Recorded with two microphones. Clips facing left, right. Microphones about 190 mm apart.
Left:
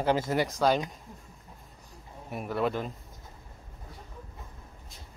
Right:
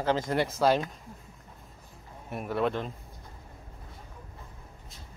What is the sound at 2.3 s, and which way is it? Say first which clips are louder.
Speech: right 1 dB; centre (ahead or behind).